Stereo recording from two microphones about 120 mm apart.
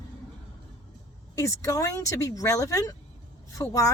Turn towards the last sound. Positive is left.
turn(degrees=25)  # may be behind; listen again after turning